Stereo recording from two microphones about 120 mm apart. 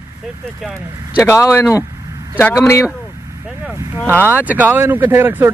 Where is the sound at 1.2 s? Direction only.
25° left (ahead or behind).